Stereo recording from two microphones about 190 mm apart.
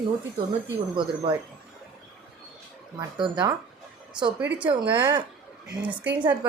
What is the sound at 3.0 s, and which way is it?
Speech, 25° right (ahead or behind).